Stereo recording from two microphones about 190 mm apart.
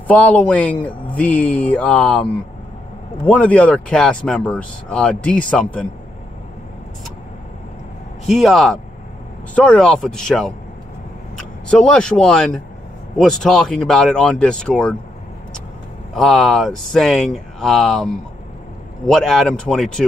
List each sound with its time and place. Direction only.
0.1 s speech: 5° left (ahead or behind)
3.3 s speech: 5° left (ahead or behind)
8.3 s speech: centre (ahead or behind)
16.2 s speech: centre (ahead or behind)